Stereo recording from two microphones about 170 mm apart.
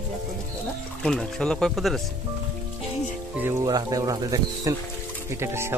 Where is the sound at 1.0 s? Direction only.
5° left (ahead or behind).